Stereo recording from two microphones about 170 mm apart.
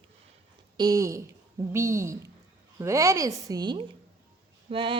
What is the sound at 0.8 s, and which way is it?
A woman's voice, 20° right (ahead or behind).